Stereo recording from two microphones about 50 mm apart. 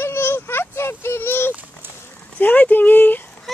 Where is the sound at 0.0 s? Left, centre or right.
Left.